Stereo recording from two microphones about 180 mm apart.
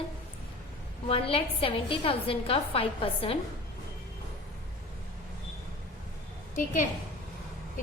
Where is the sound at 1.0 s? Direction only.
30° left (ahead or behind).